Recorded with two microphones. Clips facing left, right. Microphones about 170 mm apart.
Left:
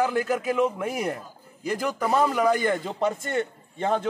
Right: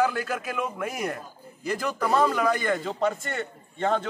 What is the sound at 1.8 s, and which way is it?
Speech, 15° left (ahead or behind).